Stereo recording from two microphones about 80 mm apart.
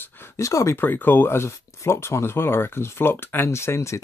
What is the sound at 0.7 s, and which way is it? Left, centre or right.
Speech, left.